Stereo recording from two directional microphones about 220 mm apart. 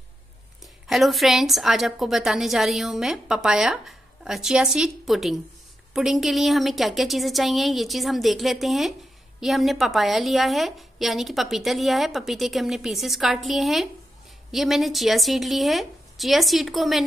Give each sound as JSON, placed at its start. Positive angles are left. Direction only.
{"t": 0.8, "sound": "a woman's voice", "side_deg": 0}